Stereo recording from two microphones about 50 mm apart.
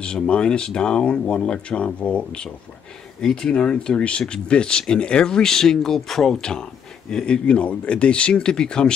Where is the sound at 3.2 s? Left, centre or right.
Centre.